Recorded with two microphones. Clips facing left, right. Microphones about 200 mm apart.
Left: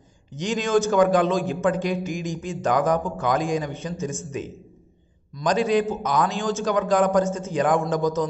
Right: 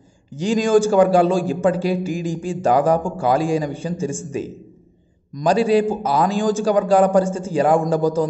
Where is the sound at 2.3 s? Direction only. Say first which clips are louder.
Right 6 dB; 30° right (ahead or behind).